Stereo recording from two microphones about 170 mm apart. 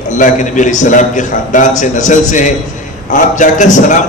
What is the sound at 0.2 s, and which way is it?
A man's voice, 45° left (ahead or behind).